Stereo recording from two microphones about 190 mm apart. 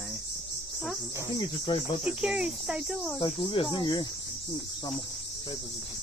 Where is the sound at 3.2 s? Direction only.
25° left (ahead or behind).